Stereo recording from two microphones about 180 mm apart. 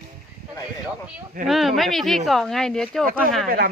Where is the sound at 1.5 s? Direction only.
Centre (ahead or behind).